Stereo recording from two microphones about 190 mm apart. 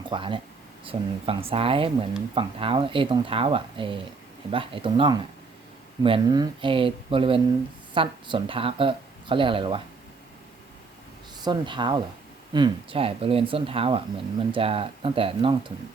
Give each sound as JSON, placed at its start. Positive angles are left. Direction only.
{"t": 0.1, "sound": "speech", "side_deg": -25}
{"t": 11.4, "sound": "speech", "side_deg": -25}